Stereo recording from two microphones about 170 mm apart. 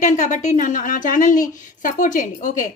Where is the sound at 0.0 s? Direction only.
45° left (ahead or behind).